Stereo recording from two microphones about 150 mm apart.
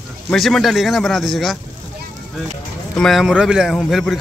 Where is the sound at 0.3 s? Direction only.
Centre (ahead or behind).